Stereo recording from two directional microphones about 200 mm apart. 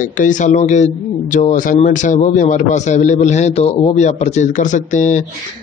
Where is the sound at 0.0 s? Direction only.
40° left (ahead or behind).